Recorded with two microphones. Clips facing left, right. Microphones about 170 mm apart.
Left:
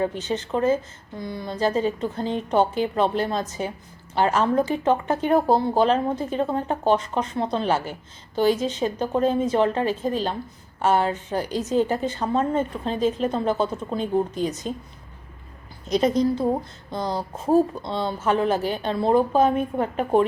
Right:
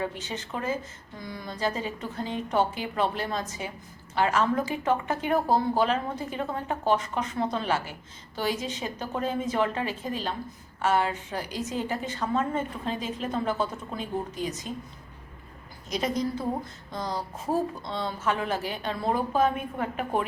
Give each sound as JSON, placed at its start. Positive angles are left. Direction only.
{"t": 0.3, "sound": "a woman's voice", "side_deg": 30}
{"t": 15.9, "sound": "speech", "side_deg": 30}